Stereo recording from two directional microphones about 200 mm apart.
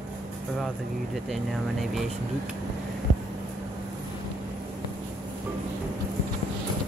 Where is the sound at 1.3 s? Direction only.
Centre (ahead or behind).